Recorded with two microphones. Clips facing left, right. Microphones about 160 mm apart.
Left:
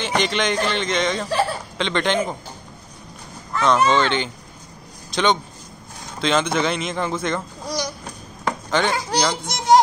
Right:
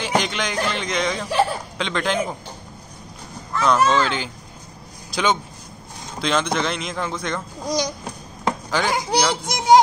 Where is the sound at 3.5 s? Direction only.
Centre (ahead or behind).